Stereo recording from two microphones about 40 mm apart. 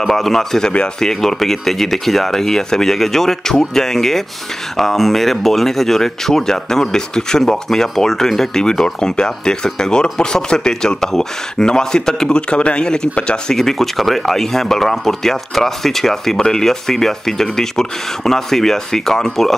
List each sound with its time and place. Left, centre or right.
0.1 s speech: centre
12.4 s speech: left; by 19.5 s centre